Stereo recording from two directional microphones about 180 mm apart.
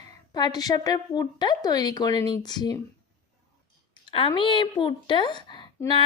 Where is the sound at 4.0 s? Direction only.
30° left (ahead or behind).